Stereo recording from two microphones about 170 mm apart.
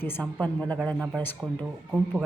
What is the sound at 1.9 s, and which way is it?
Speech, 10° right (ahead or behind).